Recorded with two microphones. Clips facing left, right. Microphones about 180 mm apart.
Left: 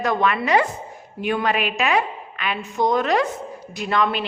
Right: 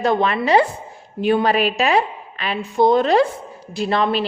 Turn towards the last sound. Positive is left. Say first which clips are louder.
# right 3 dB
turn(degrees=-30)  # may be behind; listen again after turning